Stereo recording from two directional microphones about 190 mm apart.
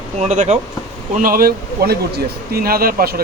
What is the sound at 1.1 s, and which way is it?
Speech, 50° right (ahead or behind).